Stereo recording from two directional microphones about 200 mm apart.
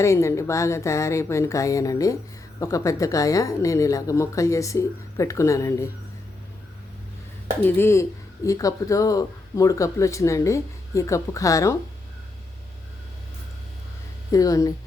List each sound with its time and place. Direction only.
0.0 s a woman's voice: 15° left (ahead or behind)
7.6 s a woman's voice: 10° left (ahead or behind)
14.3 s a woman's voice: 15° left (ahead or behind)